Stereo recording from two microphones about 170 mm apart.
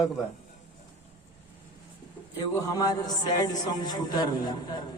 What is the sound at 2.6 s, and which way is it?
A man's voice, 20° left (ahead or behind).